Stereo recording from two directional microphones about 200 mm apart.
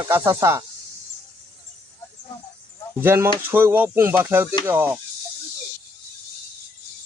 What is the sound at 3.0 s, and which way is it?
A man's voice, 10° right (ahead or behind).